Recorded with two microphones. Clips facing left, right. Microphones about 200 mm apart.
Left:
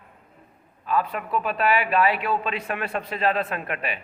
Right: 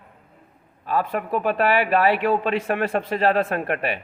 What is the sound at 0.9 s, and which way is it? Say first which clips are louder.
Speech: right 2 dB; 45° right (ahead or behind).